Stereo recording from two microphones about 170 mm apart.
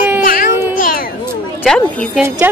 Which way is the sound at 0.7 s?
60° left (ahead or behind).